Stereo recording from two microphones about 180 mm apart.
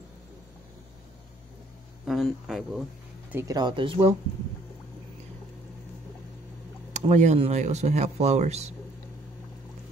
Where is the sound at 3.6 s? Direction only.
25° right (ahead or behind).